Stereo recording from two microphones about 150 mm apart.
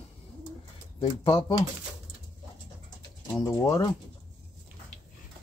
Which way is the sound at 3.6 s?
25° left (ahead or behind).